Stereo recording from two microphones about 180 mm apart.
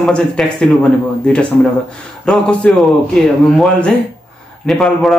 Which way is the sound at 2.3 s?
5° left (ahead or behind).